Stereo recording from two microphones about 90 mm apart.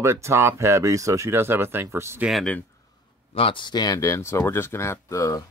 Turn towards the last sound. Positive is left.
turn(degrees=35)  # may be behind; listen again after turning